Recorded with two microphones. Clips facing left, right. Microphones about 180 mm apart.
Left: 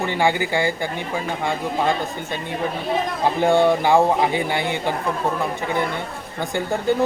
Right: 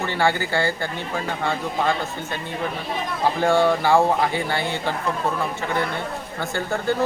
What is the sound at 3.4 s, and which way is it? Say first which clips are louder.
Speech: left 2 dB; 15° left (ahead or behind).